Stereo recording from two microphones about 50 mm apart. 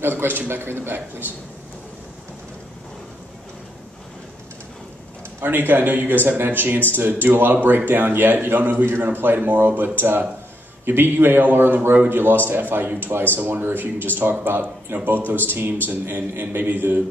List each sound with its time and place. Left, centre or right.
0.0 s speech: right
5.4 s speech: right